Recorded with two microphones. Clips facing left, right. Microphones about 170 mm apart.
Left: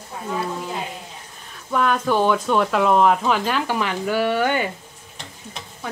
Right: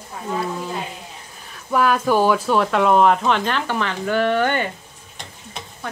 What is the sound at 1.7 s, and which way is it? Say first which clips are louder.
Speech: right 2 dB; 5° right (ahead or behind).